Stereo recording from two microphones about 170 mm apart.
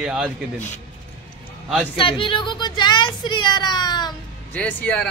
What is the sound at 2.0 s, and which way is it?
A woman's voice, 30° left (ahead or behind).